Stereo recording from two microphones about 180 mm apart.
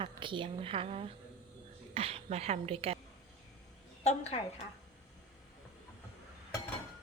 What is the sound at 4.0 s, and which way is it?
Speech, 35° left (ahead or behind).